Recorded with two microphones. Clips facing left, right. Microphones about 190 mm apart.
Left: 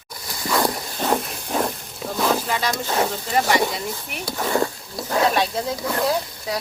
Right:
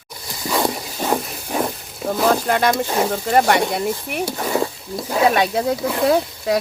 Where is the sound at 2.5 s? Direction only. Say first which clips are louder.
Right 6 dB; 55° right (ahead or behind).